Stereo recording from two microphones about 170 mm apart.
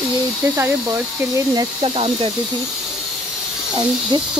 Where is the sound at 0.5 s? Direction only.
15° right (ahead or behind).